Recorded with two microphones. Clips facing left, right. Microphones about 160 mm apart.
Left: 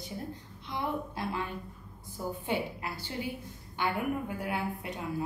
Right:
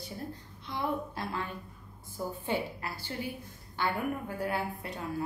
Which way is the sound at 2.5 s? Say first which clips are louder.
Even; 15° left (ahead or behind).